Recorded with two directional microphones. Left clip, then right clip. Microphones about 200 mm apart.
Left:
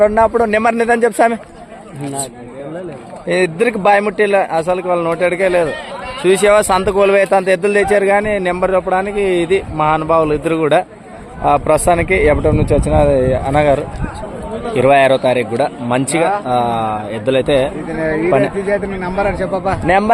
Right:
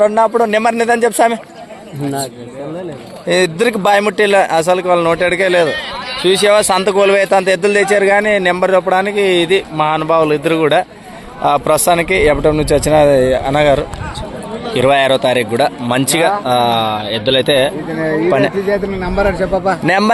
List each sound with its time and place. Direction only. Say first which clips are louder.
0.0 s speech: even; 15° left (ahead or behind)
3.2 s a man's voice: right 2 dB; centre (ahead or behind)
19.3 s a man's voice: right 3 dB; 50° right (ahead or behind)
19.8 s a man's voice: left 2 dB; 10° right (ahead or behind)